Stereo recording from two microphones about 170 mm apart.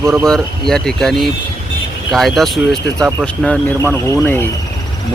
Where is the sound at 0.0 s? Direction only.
15° right (ahead or behind).